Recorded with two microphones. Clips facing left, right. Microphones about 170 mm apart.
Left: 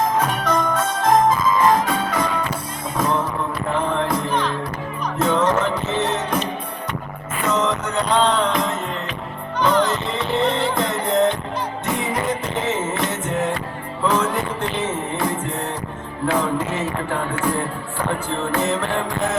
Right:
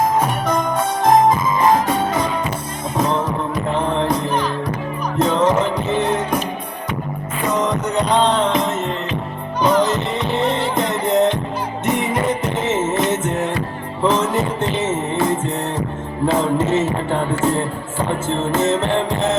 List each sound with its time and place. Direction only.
0.2 s jingle bell: 10° right (ahead or behind)
3.0 s music: 20° right (ahead or behind)
7.4 s music: 15° right (ahead or behind)
12.6 s music: 20° right (ahead or behind)